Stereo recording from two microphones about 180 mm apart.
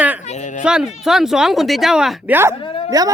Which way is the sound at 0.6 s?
5° right (ahead or behind).